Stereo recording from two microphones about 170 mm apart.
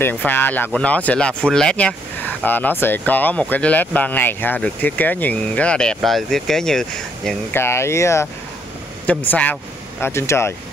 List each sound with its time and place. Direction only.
0.0 s speech: 10° left (ahead or behind)
7.5 s speech: 15° left (ahead or behind)